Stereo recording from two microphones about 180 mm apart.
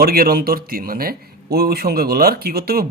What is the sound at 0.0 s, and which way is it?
Speech, 55° right (ahead or behind).